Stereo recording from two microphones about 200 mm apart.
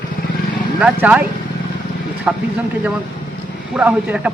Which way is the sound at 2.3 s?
5° right (ahead or behind).